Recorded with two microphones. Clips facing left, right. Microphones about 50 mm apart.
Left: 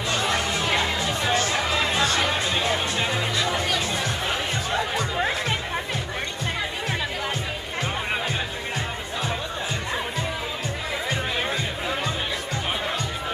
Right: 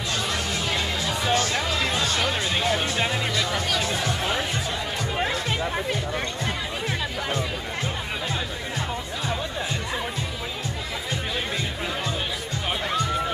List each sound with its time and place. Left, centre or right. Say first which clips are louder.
0.1 s music: left 4 dB; left
1.2 s music: even; centre